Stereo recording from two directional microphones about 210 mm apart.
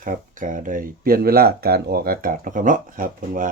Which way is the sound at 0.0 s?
40° right (ahead or behind).